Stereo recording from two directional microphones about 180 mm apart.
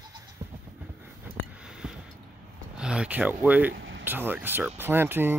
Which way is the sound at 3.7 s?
90° right.